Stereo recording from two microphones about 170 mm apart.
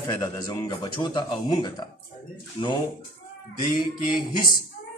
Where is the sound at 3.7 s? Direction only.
25° left (ahead or behind).